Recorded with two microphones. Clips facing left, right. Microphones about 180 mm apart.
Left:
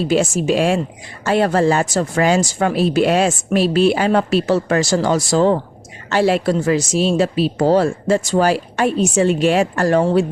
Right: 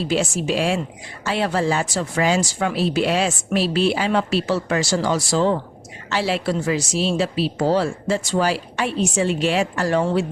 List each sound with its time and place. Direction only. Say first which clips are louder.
0.0 s speech: left 5 dB; 45° left (ahead or behind)